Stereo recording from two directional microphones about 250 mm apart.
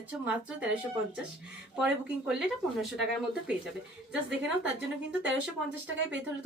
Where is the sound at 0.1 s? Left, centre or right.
Centre.